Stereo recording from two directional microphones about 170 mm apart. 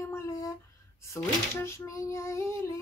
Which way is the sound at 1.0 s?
15° left (ahead or behind).